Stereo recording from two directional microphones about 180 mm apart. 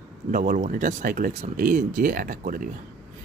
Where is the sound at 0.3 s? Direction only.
45° right (ahead or behind).